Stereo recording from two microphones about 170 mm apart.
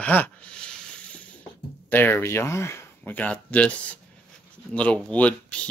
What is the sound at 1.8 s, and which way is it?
Speech, 10° left (ahead or behind).